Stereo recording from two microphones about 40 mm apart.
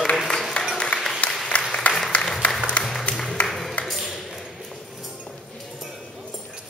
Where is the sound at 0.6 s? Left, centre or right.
Left.